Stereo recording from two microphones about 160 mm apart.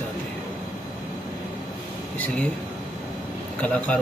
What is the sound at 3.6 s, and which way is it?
Speech, 10° left (ahead or behind).